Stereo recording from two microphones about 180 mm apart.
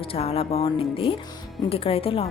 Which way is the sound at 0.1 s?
35° left (ahead or behind).